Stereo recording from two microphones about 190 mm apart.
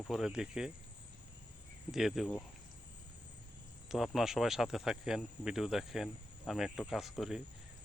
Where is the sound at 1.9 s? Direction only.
Centre (ahead or behind).